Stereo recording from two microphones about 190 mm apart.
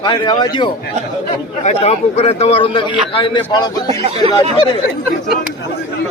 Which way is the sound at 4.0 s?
30° right (ahead or behind).